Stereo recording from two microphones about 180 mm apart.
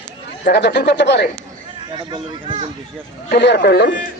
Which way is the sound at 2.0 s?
25° right (ahead or behind).